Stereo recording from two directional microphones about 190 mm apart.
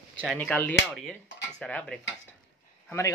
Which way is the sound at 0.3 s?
10° left (ahead or behind).